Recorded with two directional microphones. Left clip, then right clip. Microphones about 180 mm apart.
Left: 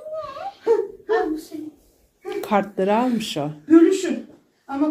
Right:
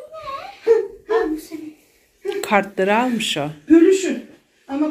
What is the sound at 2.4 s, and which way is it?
Speech, 10° left (ahead or behind).